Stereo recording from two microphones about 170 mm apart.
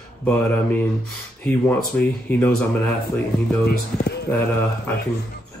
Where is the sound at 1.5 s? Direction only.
10° left (ahead or behind).